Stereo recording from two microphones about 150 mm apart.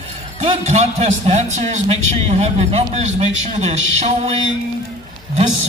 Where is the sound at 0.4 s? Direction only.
50° right (ahead or behind).